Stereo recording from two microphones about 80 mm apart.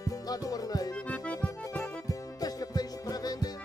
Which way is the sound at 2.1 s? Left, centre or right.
Left.